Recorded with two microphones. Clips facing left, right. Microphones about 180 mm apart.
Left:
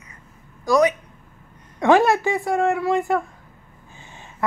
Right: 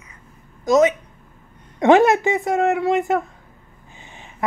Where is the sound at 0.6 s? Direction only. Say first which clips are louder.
Right 2 dB; 20° right (ahead or behind).